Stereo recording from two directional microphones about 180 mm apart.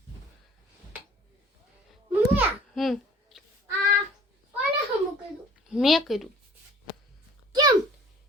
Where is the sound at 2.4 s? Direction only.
Centre (ahead or behind).